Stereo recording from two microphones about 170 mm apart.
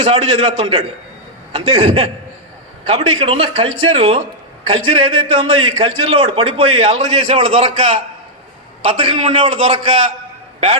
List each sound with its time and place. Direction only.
0.0 s a man's voice: 35° right (ahead or behind)